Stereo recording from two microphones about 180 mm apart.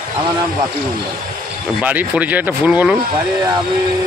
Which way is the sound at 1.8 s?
10° right (ahead or behind).